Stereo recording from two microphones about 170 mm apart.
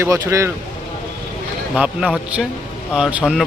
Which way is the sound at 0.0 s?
15° right (ahead or behind).